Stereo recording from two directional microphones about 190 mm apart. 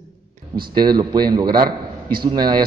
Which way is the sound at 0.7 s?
25° right (ahead or behind).